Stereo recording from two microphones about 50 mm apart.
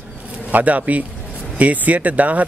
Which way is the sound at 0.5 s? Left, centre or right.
Right.